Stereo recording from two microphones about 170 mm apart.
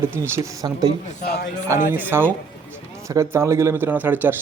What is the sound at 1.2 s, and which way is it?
Speech, 70° left (ahead or behind).